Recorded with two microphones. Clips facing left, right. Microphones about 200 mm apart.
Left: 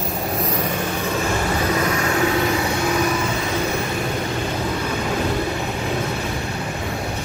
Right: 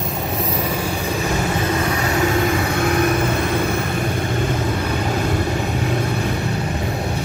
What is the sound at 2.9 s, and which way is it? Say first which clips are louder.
Vehicle: right 3 dB; 55° right (ahead or behind).